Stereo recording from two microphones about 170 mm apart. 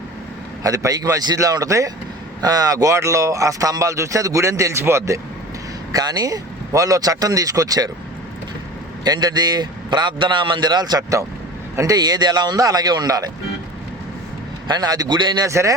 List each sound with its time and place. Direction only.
0.6 s speech: 20° right (ahead or behind)
9.0 s speech: 25° right (ahead or behind)
14.7 s speech: 25° right (ahead or behind)